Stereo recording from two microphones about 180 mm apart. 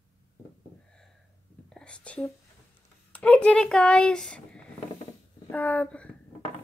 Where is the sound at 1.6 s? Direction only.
5° left (ahead or behind).